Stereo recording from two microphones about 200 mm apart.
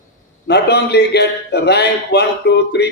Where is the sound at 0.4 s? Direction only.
55° left (ahead or behind).